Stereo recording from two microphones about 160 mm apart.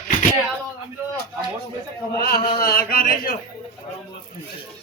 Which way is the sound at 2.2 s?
70° left (ahead or behind).